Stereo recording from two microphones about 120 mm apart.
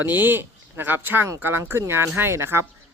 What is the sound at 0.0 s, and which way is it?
Speech, 15° right (ahead or behind).